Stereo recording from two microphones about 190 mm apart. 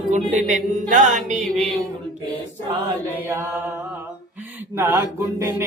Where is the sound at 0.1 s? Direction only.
40° right (ahead or behind).